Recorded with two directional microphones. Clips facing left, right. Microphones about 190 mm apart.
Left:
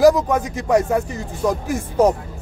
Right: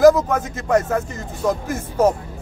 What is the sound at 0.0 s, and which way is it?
Speech, 15° left (ahead or behind).